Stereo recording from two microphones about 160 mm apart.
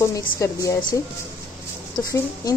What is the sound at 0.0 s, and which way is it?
Speech, 20° left (ahead or behind).